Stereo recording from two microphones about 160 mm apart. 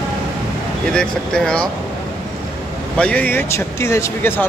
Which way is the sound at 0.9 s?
5° left (ahead or behind).